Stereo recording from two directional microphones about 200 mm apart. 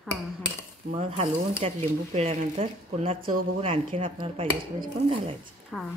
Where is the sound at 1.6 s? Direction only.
30° right (ahead or behind).